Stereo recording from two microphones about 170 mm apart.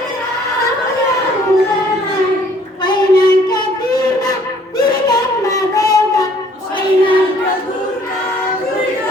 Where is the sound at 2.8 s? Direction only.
25° left (ahead or behind).